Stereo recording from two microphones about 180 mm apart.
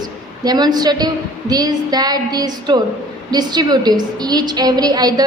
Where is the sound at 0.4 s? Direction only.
20° right (ahead or behind).